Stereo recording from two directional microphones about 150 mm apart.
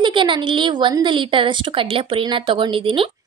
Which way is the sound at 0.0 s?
35° right (ahead or behind).